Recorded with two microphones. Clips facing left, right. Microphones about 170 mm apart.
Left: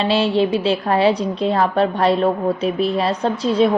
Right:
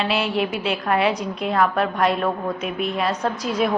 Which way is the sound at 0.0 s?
30° left (ahead or behind).